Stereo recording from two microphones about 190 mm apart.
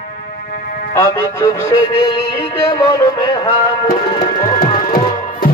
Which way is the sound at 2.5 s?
15° left (ahead or behind).